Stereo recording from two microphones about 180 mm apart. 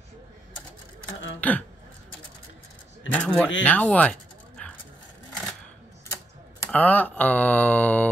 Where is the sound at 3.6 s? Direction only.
5° left (ahead or behind).